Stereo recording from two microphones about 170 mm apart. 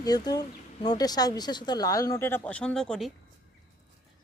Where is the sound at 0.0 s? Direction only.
25° left (ahead or behind); by 3.1 s 5° left (ahead or behind).